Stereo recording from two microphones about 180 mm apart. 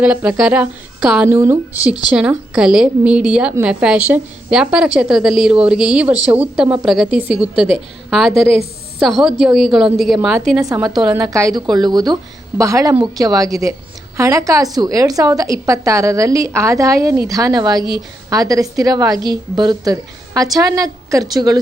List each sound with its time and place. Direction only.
0.0 s a woman's voice: 5° right (ahead or behind)
11.2 s a woman's voice: 20° right (ahead or behind)